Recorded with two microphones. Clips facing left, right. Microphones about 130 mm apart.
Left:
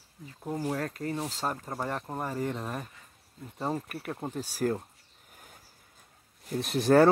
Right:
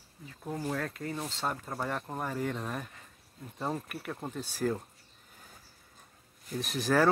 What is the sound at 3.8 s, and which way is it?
Speech, 5° left (ahead or behind).